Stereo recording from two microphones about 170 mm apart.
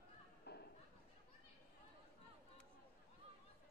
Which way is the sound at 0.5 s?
70° left (ahead or behind).